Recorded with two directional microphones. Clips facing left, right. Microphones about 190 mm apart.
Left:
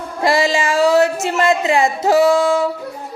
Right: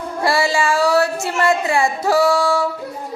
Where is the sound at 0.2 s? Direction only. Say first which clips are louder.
Left 2 dB; 20° left (ahead or behind).